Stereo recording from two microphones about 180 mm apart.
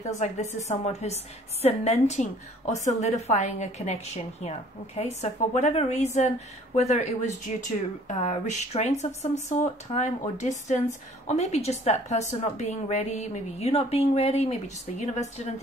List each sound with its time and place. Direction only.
0.0 s speech: 40° left (ahead or behind)